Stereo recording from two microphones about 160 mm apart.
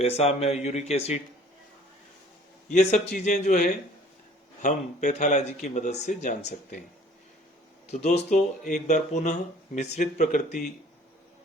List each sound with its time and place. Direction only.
0.0 s speech: 40° left (ahead or behind)
2.6 s speech: 50° left (ahead or behind)
7.9 s speech: 45° left (ahead or behind)